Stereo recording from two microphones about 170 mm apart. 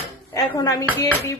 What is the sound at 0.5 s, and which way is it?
Speech, 20° left (ahead or behind).